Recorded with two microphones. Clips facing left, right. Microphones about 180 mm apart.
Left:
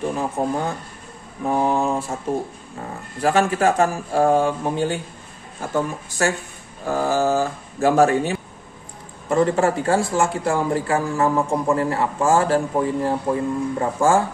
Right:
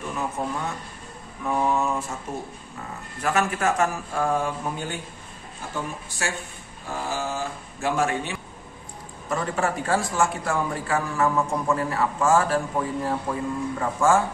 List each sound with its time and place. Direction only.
0.0 s speech: 30° left (ahead or behind)
6.9 s a man's voice: 40° left (ahead or behind)